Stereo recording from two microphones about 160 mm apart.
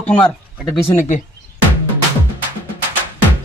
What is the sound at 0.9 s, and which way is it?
Speech, 50° left (ahead or behind).